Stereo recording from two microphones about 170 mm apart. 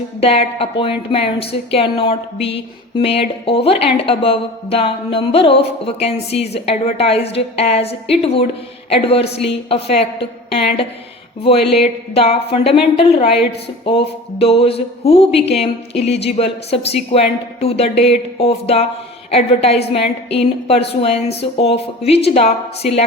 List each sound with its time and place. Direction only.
0.2 s a woman's voice: 35° left (ahead or behind)